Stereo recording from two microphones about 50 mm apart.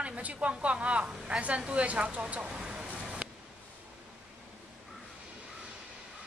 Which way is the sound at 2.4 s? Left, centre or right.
Centre.